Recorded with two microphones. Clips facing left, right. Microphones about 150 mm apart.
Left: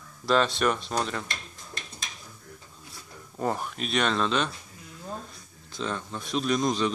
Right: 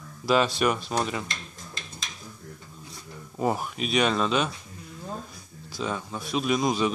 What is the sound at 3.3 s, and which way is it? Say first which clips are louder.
Speech: right 2 dB; 10° right (ahead or behind).